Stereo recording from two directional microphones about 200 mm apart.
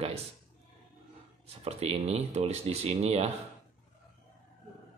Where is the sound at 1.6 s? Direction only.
30° right (ahead or behind).